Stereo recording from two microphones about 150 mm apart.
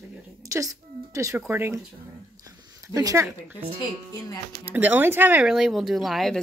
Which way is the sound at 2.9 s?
20° right (ahead or behind).